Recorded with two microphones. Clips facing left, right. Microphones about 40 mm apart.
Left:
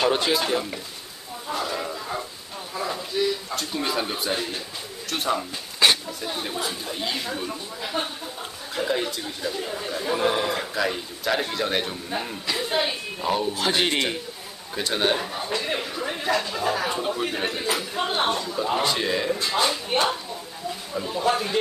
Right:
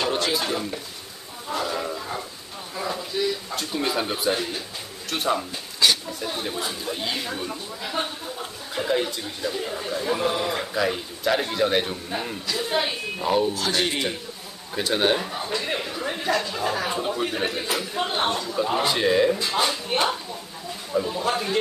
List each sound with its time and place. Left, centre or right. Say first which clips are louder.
0.5 s speech: left 2 dB; centre
1.5 s speech: right 1 dB; centre
5.8 s a sound: left 1 dB; left
6.2 s speech: even; centre
10.2 s speech: left 4 dB; centre
10.5 s speech: right 1 dB; centre
13.6 s speech: left 1 dB; left
14.8 s speech: right 2 dB; centre